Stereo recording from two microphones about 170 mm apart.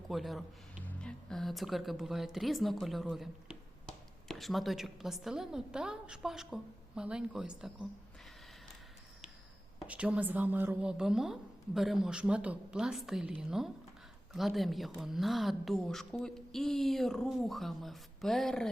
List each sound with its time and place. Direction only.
0.1 s a woman's voice: centre (ahead or behind)
9.8 s a woman's voice: 10° right (ahead or behind)